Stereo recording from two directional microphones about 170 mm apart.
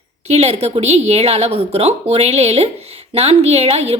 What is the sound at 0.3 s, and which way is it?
A woman's voice, 40° right (ahead or behind).